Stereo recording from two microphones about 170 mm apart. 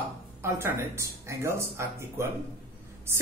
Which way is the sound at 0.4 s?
15° right (ahead or behind).